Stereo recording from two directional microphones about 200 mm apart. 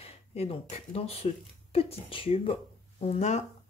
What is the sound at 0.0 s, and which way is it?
Speech, 30° left (ahead or behind).